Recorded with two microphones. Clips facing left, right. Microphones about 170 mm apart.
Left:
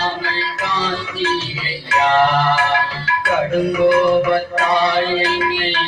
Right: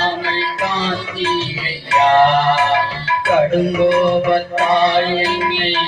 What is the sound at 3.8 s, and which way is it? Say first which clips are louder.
Music: left 2 dB; 25° right (ahead or behind).